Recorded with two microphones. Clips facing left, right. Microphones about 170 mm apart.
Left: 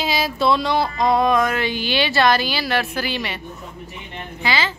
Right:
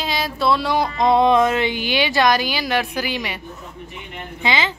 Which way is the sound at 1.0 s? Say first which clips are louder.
Right 4 dB; 25° right (ahead or behind).